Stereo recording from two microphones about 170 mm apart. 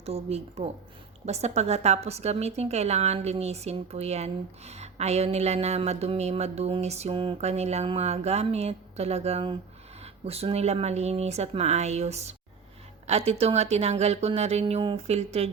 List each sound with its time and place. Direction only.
0.0 s a woman's voice: 40° right (ahead or behind)